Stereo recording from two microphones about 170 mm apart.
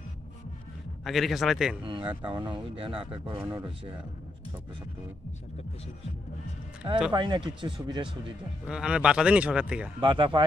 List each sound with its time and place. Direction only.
1.0 s speech: centre (ahead or behind)
1.9 s speech: 30° right (ahead or behind)
3.3 s speech: 10° right (ahead or behind)
7.1 s speech: 25° right (ahead or behind)
8.6 s speech: 5° right (ahead or behind)
9.9 s speech: 30° right (ahead or behind)